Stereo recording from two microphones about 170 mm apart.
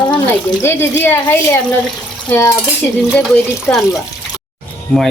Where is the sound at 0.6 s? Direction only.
15° left (ahead or behind).